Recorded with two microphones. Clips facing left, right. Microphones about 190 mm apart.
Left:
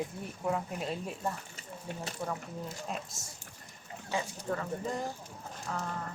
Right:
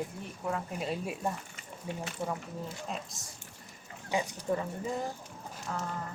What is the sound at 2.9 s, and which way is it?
Speech, centre (ahead or behind).